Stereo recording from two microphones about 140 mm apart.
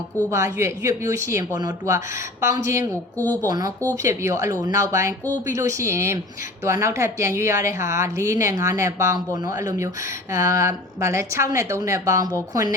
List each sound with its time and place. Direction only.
0.3 s speech: 20° right (ahead or behind)